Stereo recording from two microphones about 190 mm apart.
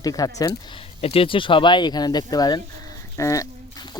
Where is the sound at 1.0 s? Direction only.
30° left (ahead or behind).